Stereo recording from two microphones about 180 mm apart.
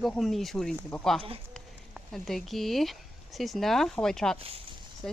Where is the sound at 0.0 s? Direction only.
Centre (ahead or behind).